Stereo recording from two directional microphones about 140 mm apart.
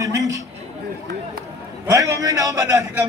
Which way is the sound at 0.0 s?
25° right (ahead or behind).